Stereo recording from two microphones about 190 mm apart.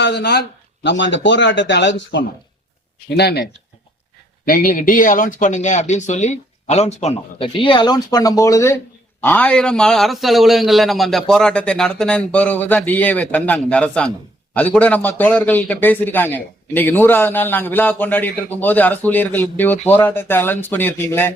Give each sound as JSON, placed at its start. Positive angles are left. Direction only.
{"t": 0.0, "sound": "speech", "side_deg": 60}
{"t": 3.2, "sound": "speech", "side_deg": 60}
{"t": 4.4, "sound": "a man's voice", "side_deg": 45}